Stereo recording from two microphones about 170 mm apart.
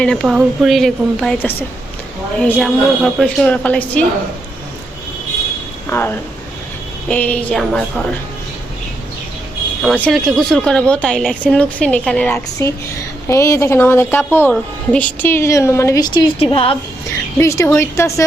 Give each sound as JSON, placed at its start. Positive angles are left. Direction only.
{"t": 0.0, "sound": "a woman's voice", "side_deg": 0}
{"t": 5.9, "sound": "speech", "side_deg": 15}
{"t": 10.0, "sound": "a woman's voice", "side_deg": 0}
{"t": 12.6, "sound": "speech", "side_deg": 15}
{"t": 17.3, "sound": "speech", "side_deg": 15}